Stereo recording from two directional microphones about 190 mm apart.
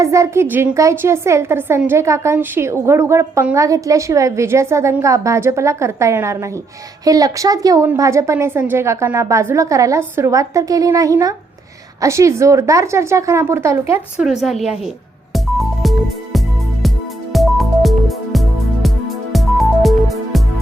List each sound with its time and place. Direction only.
0.0 s a woman's voice: 15° right (ahead or behind)
14.3 s speech: centre (ahead or behind)
15.3 s music: centre (ahead or behind)